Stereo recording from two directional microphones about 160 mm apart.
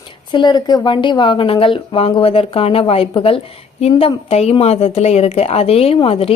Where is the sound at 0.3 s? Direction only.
30° left (ahead or behind).